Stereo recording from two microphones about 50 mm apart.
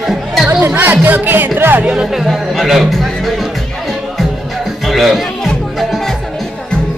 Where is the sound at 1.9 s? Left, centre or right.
Centre.